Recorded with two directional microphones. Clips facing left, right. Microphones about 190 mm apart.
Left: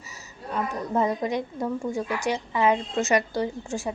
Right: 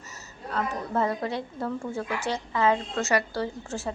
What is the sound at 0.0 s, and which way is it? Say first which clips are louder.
A woman's voice: even; 10° left (ahead or behind).